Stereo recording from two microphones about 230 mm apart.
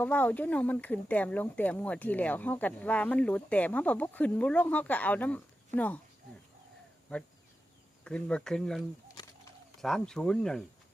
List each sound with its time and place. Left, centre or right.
0.0 s speech: centre
8.0 s speech: centre
9.2 s a sound: centre
9.8 s speech: centre